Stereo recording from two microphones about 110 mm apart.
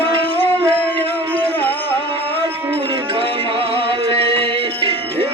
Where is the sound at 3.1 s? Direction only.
55° right (ahead or behind).